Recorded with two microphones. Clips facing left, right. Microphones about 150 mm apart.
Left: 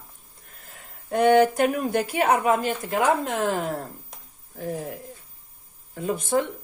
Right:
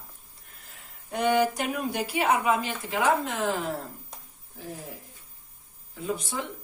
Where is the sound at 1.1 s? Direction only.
50° left (ahead or behind).